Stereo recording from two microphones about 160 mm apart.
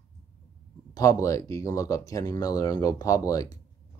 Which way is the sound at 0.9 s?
20° left (ahead or behind).